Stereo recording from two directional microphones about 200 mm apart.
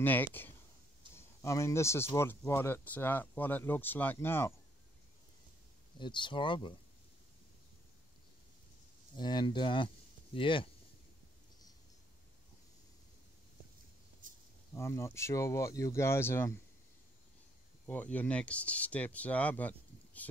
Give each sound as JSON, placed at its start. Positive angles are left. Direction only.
{"t": 0.0, "sound": "speech", "side_deg": 10}
{"t": 5.9, "sound": "speech", "side_deg": 25}
{"t": 9.1, "sound": "speech", "side_deg": 20}
{"t": 14.2, "sound": "a sound", "side_deg": -40}
{"t": 14.7, "sound": "speech", "side_deg": 15}
{"t": 17.8, "sound": "speech", "side_deg": 5}